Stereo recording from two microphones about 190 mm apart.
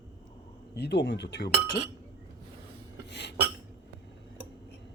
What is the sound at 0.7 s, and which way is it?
Speech, 60° left (ahead or behind).